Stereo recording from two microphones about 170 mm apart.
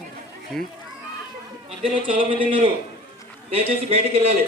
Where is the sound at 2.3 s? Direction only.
30° right (ahead or behind).